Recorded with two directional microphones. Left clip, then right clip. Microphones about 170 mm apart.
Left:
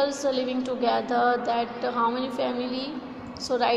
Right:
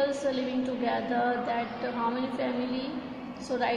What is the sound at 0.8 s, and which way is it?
A woman's voice, 15° left (ahead or behind).